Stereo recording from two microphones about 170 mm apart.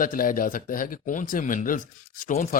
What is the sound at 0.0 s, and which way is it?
Speech, 55° left (ahead or behind).